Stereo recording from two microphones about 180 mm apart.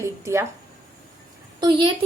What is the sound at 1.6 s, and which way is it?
Speech, 30° right (ahead or behind).